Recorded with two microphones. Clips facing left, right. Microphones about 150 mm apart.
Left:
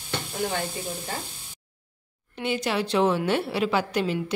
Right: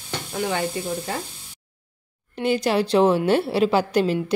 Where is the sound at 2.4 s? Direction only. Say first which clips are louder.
Right 6 dB; 40° right (ahead or behind).